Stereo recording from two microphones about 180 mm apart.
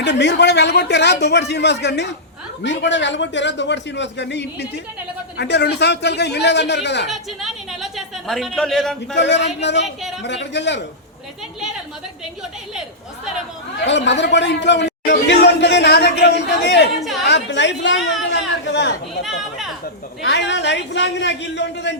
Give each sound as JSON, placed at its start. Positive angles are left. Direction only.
{"t": 0.0, "sound": "a man's voice", "side_deg": 75}
{"t": 2.6, "sound": "a man's voice", "side_deg": 85}
{"t": 7.1, "sound": "a woman's voice", "side_deg": 0}
{"t": 9.1, "sound": "a man's voice", "side_deg": 75}
{"t": 13.8, "sound": "a man's voice", "side_deg": 80}
{"t": 19.2, "sound": "chatter", "side_deg": 0}
{"t": 20.2, "sound": "a man's voice", "side_deg": 75}